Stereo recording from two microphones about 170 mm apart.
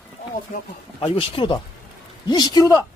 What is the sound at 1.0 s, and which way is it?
Speech, 30° left (ahead or behind).